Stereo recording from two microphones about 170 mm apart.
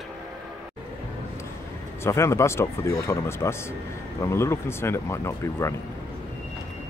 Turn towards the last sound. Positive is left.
turn(degrees=15)  # may be behind; listen again after turning